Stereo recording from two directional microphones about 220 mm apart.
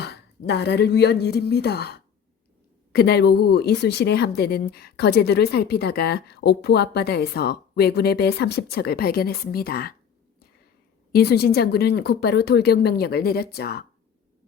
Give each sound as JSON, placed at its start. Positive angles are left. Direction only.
{"t": 0.0, "sound": "speech", "side_deg": 50}
{"t": 11.1, "sound": "speech", "side_deg": 45}